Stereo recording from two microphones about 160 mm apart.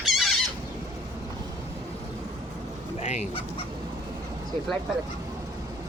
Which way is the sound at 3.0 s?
45° left (ahead or behind).